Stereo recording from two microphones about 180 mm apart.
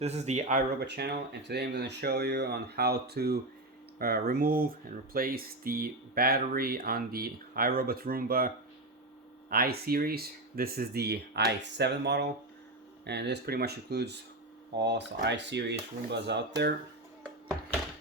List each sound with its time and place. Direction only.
0.0 s speech: 40° right (ahead or behind)
0.8 s speech: 65° right (ahead or behind)